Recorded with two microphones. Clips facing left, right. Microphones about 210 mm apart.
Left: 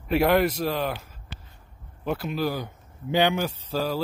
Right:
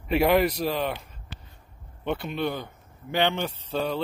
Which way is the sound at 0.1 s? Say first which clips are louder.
Even; centre (ahead or behind).